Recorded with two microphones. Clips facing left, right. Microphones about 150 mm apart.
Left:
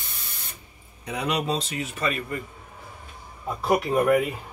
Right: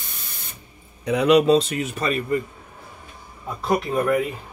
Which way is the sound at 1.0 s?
80° right.